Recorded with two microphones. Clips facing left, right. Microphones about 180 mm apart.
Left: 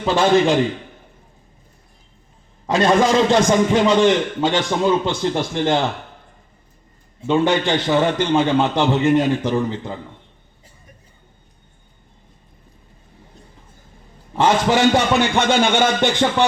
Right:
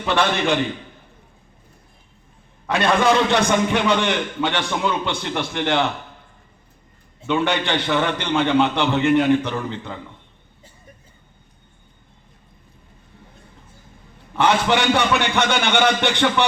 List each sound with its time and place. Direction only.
0.1 s a man's voice: 65° right (ahead or behind)
2.6 s a man's voice: 65° right (ahead or behind)
7.4 s a man's voice: 60° right (ahead or behind)
14.3 s a man's voice: 65° right (ahead or behind)